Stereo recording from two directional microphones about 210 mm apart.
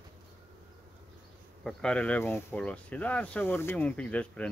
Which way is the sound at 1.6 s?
5° left (ahead or behind).